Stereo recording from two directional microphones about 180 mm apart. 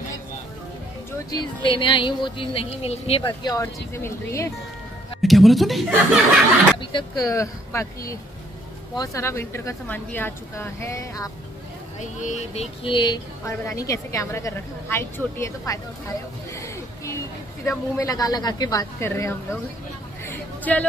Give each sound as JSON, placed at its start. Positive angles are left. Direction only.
{"t": 1.3, "sound": "a woman's voice", "side_deg": 25}
{"t": 5.2, "sound": "speech", "side_deg": 0}
{"t": 6.8, "sound": "a woman's voice", "side_deg": 25}
{"t": 8.9, "sound": "speech", "side_deg": 20}
{"t": 12.0, "sound": "a woman's voice", "side_deg": 45}
{"t": 16.5, "sound": "a sound", "side_deg": 15}
{"t": 17.6, "sound": "a woman's voice", "side_deg": 20}
{"t": 20.2, "sound": "a sound", "side_deg": 10}